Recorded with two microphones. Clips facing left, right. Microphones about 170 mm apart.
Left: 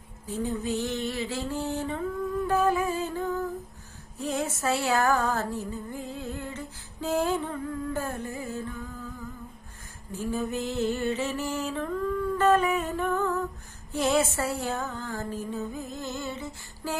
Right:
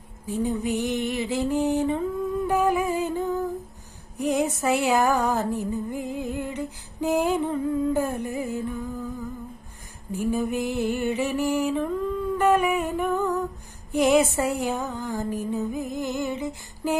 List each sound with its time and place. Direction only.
0.3 s music: 15° right (ahead or behind)
2.5 s humming: 15° right (ahead or behind)
4.2 s music: 15° right (ahead or behind)
10.1 s mantra: 15° right (ahead or behind)
13.9 s music: 15° right (ahead or behind)